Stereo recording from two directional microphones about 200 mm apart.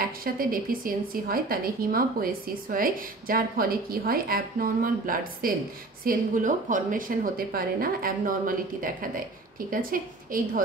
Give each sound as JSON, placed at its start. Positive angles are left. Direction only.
{"t": 0.0, "sound": "a woman's voice", "side_deg": -45}